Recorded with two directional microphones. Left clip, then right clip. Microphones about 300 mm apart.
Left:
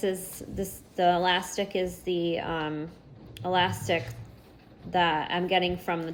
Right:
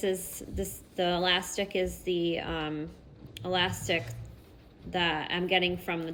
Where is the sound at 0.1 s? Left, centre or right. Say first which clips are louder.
Even; left.